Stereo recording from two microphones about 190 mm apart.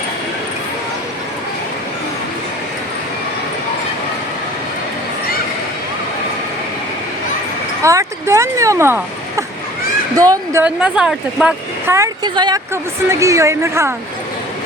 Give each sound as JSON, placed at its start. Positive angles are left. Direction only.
{"t": 7.8, "sound": "a sound", "side_deg": -15}
{"t": 10.2, "sound": "a woman's voice", "side_deg": -15}
{"t": 11.9, "sound": "a woman's voice", "side_deg": -15}